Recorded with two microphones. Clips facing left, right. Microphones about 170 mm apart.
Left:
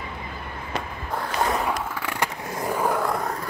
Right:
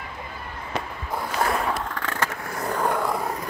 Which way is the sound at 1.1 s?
Centre (ahead or behind).